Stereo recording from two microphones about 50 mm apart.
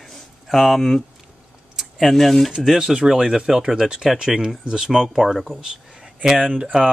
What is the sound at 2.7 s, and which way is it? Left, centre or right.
Speech, centre.